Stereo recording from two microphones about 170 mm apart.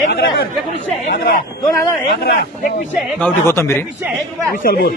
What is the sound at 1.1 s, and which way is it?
Speech, 55° left (ahead or behind).